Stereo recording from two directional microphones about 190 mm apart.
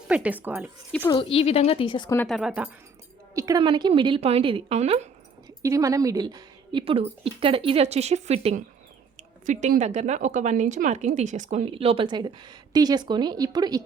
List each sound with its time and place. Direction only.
0.1 s speech: 5° right (ahead or behind)
1.1 s speech: 30° left (ahead or behind)
2.2 s speech: centre (ahead or behind)
3.3 s a woman's voice: 20° right (ahead or behind); by 5.0 s 35° right (ahead or behind)
5.5 s a woman's voice: 15° right (ahead or behind)